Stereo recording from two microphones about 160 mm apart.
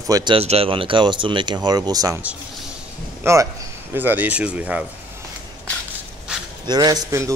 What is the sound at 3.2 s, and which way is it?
A man's voice, 20° right (ahead or behind).